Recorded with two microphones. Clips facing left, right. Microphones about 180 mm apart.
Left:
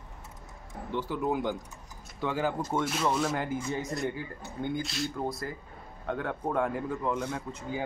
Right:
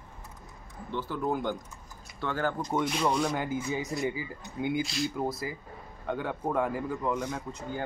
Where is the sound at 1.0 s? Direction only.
5° left (ahead or behind).